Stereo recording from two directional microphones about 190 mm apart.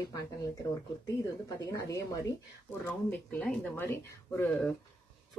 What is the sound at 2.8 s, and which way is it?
Speech, 5° left (ahead or behind).